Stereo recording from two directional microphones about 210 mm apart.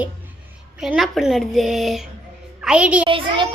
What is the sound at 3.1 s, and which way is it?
Speech, 25° right (ahead or behind).